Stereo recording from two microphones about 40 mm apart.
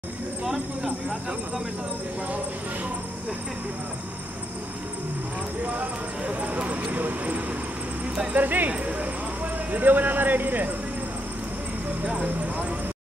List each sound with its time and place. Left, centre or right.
6.2 s speech: right
9.7 s speech: right
12.0 s speech: right